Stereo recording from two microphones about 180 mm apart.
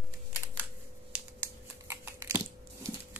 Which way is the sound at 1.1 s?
15° right (ahead or behind).